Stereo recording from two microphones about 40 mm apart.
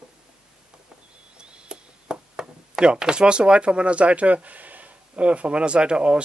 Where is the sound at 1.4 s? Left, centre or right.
Right.